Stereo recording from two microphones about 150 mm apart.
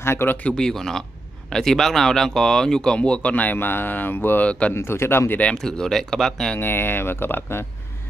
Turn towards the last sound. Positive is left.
turn(degrees=15)  # may be behind; listen again after turning